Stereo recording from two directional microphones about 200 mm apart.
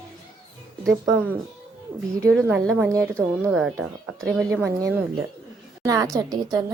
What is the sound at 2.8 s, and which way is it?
Speech, 15° right (ahead or behind).